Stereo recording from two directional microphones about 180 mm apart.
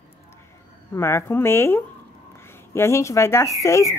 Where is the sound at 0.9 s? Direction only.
15° left (ahead or behind).